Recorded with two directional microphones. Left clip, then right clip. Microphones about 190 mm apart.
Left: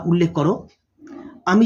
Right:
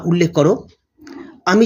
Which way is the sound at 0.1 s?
20° right (ahead or behind).